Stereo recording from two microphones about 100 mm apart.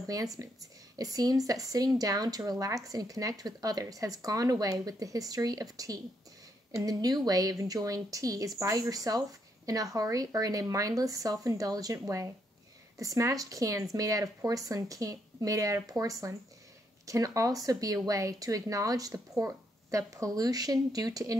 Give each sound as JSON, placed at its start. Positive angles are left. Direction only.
{"t": 0.0, "sound": "speech", "side_deg": -35}